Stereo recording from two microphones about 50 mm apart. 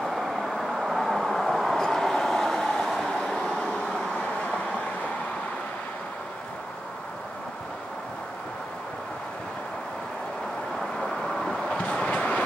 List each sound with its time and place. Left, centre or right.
0.0 s vehicle: centre
11.0 s vehicle: centre
11.7 s train: left